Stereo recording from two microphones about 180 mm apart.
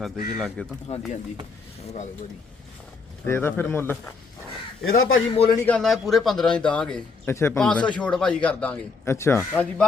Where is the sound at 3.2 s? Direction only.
10° left (ahead or behind).